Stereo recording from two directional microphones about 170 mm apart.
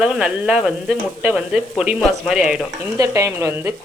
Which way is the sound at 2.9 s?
20° right (ahead or behind).